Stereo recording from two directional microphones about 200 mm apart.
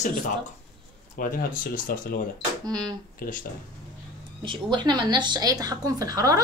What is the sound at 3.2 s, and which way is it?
Speech, 45° left (ahead or behind).